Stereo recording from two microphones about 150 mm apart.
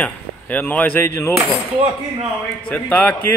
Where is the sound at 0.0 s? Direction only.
10° left (ahead or behind).